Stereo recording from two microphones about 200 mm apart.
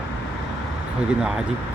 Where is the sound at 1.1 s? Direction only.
5° right (ahead or behind).